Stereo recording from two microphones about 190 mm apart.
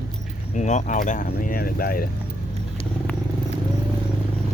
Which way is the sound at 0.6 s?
40° left (ahead or behind).